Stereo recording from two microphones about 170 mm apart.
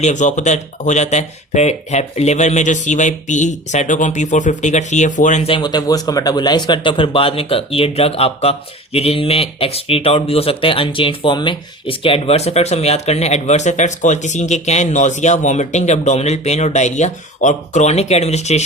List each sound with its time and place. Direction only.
0.0 s speech: 45° left (ahead or behind)